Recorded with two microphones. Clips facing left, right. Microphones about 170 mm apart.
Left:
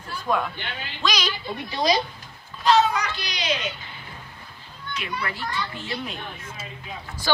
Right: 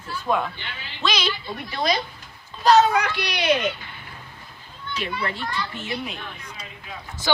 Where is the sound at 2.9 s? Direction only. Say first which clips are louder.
Right 5 dB; 60° right (ahead or behind).